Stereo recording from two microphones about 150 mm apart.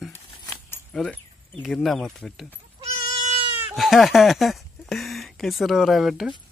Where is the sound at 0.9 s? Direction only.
5° left (ahead or behind).